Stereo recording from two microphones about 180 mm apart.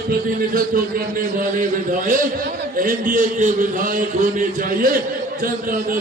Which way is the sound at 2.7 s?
50° right (ahead or behind).